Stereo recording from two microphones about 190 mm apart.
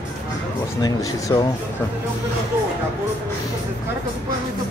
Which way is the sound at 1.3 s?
20° left (ahead or behind).